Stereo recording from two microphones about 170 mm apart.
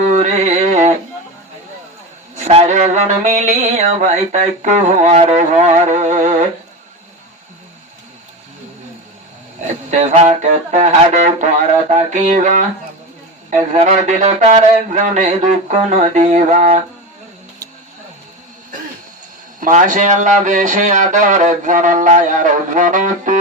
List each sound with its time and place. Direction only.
0.1 s mantra: 45° right (ahead or behind)
2.5 s mantra: 40° right (ahead or behind)
9.9 s mantra: 45° right (ahead or behind)
19.5 s mantra: 50° right (ahead or behind)